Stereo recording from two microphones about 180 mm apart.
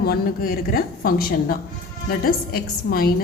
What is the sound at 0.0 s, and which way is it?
A woman's voice, 55° left (ahead or behind).